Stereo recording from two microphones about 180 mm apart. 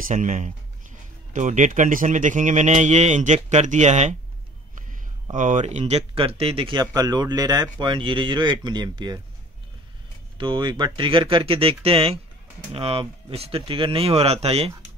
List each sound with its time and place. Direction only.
0.0 s speech: 45° right (ahead or behind)
5.3 s speech: 45° right (ahead or behind); by 9.2 s 25° right (ahead or behind)
10.3 s speech: 25° right (ahead or behind)